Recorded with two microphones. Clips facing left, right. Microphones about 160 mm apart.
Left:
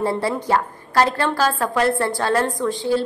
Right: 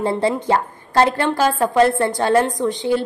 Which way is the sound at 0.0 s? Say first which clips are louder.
Right 2 dB; 25° right (ahead or behind).